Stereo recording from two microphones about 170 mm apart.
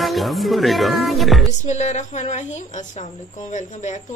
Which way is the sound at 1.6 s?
45° left (ahead or behind).